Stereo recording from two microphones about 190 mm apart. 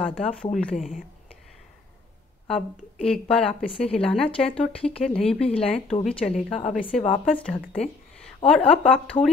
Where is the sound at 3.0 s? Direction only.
5° left (ahead or behind).